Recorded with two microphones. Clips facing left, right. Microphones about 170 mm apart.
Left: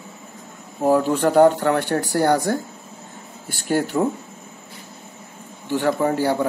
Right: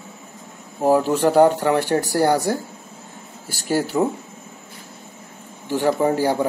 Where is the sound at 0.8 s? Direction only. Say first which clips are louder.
Right 1 dB; 10° right (ahead or behind).